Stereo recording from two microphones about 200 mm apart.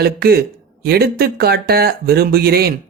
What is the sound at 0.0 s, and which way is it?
Speech, 50° right (ahead or behind).